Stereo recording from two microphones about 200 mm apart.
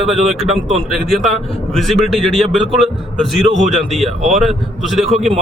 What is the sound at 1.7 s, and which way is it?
Speech, centre (ahead or behind).